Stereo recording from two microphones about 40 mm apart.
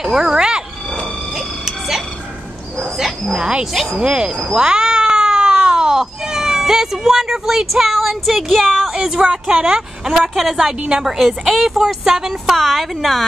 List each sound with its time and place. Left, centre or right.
0.0 s a sound: centre
3.3 s speech: right
3.7 s speech: centre
4.0 s speech: right
4.6 s cat: centre
8.9 s speech: centre
9.8 s speech: centre
12.5 s speech: centre